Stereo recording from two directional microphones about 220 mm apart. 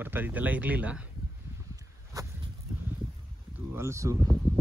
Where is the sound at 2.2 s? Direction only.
15° right (ahead or behind).